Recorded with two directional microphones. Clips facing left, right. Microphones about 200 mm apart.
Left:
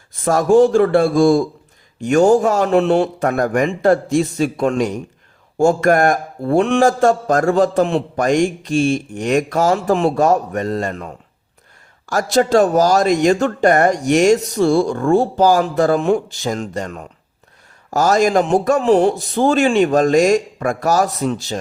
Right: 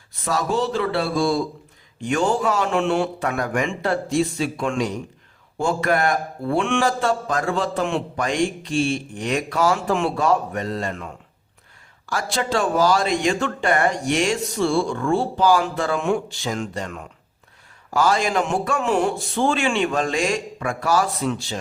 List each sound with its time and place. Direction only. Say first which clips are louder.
0.3 s a man's voice: left 11 dB; 50° left (ahead or behind)